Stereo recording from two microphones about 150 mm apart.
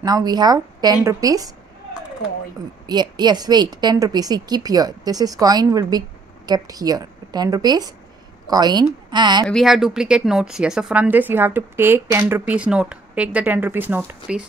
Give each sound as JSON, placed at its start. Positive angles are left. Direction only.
{"t": 0.0, "sound": "a woman's voice", "side_deg": -25}
{"t": 2.9, "sound": "a woman's voice", "side_deg": -30}
{"t": 9.5, "sound": "a woman's voice", "side_deg": 0}